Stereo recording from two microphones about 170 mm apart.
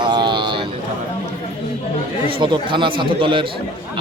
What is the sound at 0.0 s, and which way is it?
Vehicle, 25° right (ahead or behind).